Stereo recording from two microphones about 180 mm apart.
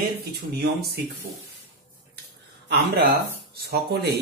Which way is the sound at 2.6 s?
65° right (ahead or behind).